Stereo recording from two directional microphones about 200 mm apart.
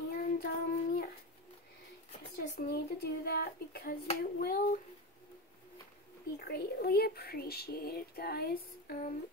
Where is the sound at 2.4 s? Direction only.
50° left (ahead or behind).